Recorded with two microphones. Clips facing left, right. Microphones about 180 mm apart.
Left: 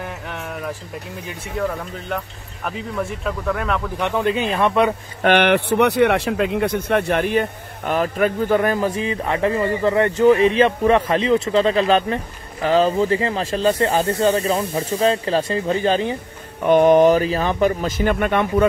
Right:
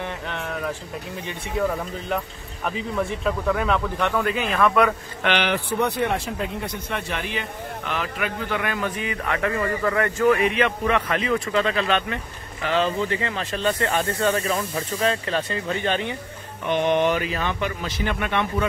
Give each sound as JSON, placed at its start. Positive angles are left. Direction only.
{"t": 0.0, "sound": "a sound", "side_deg": 5}
{"t": 1.6, "sound": "speech", "side_deg": 0}
{"t": 4.0, "sound": "a man's voice", "side_deg": 25}
{"t": 5.2, "sound": "speech", "side_deg": 55}
{"t": 16.6, "sound": "a man's voice", "side_deg": 45}